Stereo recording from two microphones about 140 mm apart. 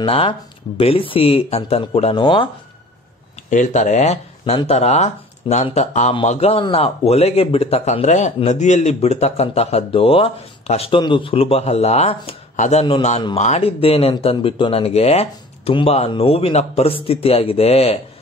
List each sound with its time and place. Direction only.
0.0 s speech: 40° left (ahead or behind)
3.4 s speech: 60° left (ahead or behind); by 18.0 s 45° left (ahead or behind)